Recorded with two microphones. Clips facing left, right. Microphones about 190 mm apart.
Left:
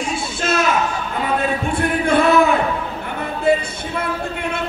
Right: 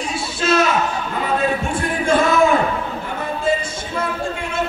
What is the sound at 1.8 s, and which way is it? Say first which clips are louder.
Music: left 2 dB; 60° left (ahead or behind).